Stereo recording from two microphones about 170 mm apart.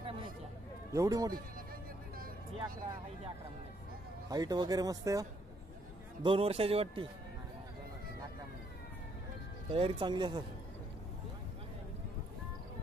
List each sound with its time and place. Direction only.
0.0 s a sound: 30° right (ahead or behind)
0.9 s speech: 20° right (ahead or behind)
4.3 s speech: 25° right (ahead or behind)
6.2 s speech: 35° right (ahead or behind)
9.7 s speech: 30° right (ahead or behind)